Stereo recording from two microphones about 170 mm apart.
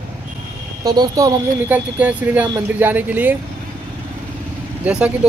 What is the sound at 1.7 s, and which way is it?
Speech, 10° right (ahead or behind).